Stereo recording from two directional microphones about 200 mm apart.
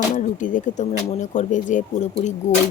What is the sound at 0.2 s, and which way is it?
Speech, 40° left (ahead or behind).